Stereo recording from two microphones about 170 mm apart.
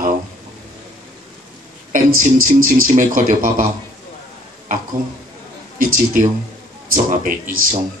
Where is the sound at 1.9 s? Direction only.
50° right (ahead or behind).